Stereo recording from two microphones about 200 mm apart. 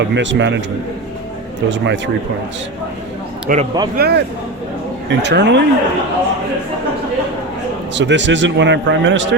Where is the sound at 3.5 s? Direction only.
40° right (ahead or behind).